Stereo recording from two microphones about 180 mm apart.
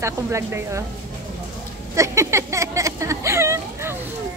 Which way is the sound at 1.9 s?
15° right (ahead or behind).